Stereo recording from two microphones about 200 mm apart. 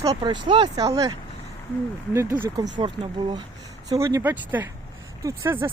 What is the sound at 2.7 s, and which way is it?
Speech, 25° right (ahead or behind).